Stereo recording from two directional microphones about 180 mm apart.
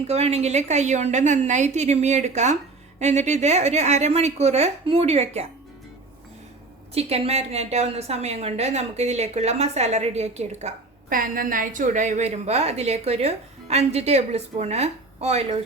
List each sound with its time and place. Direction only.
0.1 s a woman's voice: 35° right (ahead or behind)
6.9 s a woman's voice: 35° right (ahead or behind)